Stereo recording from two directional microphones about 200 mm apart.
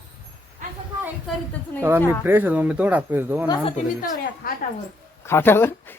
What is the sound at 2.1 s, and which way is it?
Speech, 10° right (ahead or behind).